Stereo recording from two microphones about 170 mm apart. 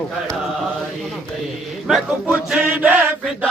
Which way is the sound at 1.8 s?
5° right (ahead or behind).